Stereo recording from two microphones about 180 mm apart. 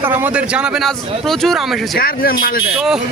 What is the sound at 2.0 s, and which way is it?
Speech, 55° left (ahead or behind).